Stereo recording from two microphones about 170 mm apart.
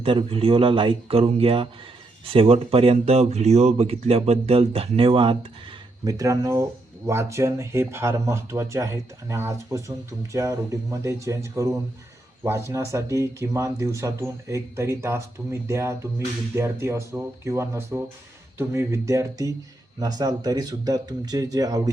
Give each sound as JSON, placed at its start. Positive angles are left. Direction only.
{"t": 0.0, "sound": "speech", "side_deg": -30}
{"t": 6.1, "sound": "speech", "side_deg": -20}